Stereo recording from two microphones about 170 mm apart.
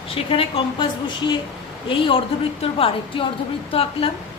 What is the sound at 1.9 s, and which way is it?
A woman's voice, 30° left (ahead or behind).